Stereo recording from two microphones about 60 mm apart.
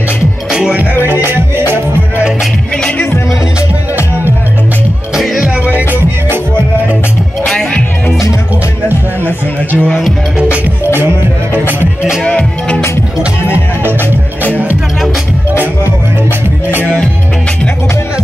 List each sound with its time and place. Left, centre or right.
0.5 s music: centre
1.0 s music: right
5.7 s music: right
7.4 s music: centre
8.8 s music: right
9.8 s speech: centre
12.3 s music: centre
16.8 s music: left